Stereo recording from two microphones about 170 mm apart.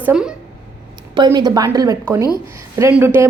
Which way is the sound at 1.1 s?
25° right (ahead or behind).